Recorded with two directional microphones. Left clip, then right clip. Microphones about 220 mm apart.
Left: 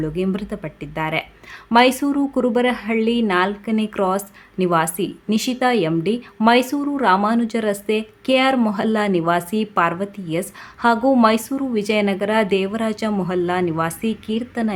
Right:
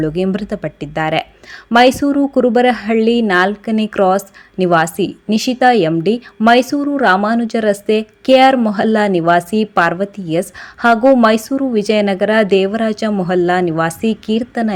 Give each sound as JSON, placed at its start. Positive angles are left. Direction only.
{"t": 0.0, "sound": "a woman's voice", "side_deg": -20}